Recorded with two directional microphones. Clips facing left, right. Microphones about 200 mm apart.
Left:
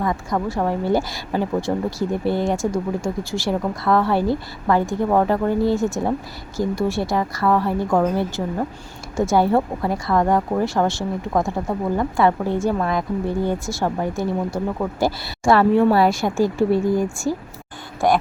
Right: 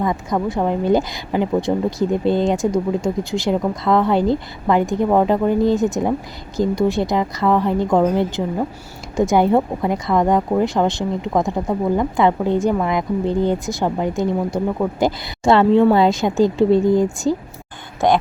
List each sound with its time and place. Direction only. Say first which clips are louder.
0.0 s speech: right 2 dB; 20° right (ahead or behind)